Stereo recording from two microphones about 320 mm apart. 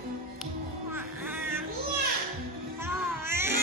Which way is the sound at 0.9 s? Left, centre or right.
Centre.